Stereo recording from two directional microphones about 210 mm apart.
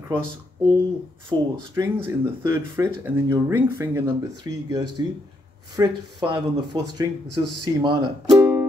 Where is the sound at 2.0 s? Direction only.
15° right (ahead or behind).